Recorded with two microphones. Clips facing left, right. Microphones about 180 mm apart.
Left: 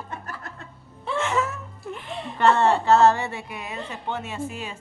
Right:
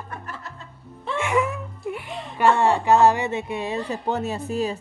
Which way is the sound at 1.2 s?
10° right (ahead or behind).